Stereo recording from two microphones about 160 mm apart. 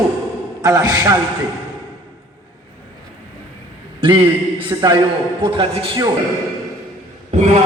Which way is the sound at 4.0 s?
30° right (ahead or behind).